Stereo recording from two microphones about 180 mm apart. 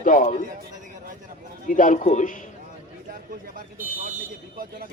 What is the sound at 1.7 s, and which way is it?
Speech, 50° left (ahead or behind).